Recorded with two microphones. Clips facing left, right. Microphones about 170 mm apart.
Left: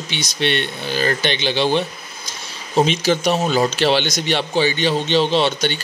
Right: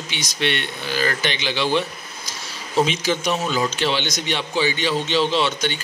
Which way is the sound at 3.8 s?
85° left.